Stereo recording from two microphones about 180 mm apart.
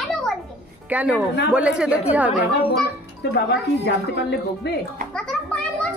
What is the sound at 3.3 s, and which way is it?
Speech, 70° left (ahead or behind).